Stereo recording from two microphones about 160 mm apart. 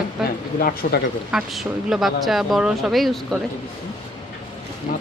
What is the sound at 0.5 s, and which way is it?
Speech, 65° left (ahead or behind).